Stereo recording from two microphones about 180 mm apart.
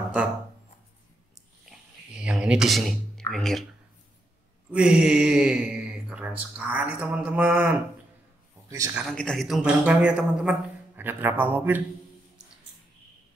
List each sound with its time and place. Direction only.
1.7 s a sound: 5° right (ahead or behind)
4.6 s a man's voice: 5° right (ahead or behind)
8.9 s a woman's voice: centre (ahead or behind)